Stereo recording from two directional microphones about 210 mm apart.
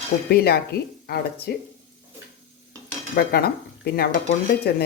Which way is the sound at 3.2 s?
45° left (ahead or behind).